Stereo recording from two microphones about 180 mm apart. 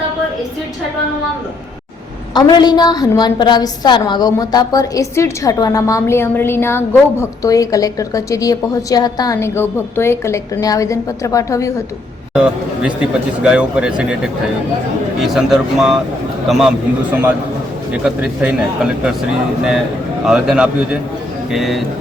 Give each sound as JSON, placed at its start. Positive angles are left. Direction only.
{"t": 2.3, "sound": "a woman's voice", "side_deg": 25}
{"t": 12.3, "sound": "speech", "side_deg": -5}
{"t": 15.2, "sound": "speech", "side_deg": 0}
{"t": 20.2, "sound": "speech", "side_deg": -5}